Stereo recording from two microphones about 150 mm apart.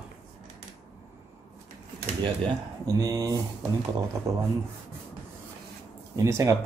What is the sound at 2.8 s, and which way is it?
Speech, 25° right (ahead or behind).